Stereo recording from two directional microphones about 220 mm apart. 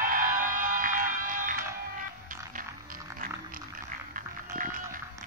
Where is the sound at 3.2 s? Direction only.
40° right (ahead or behind).